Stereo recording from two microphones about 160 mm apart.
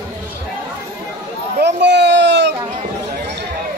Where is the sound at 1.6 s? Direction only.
90° right.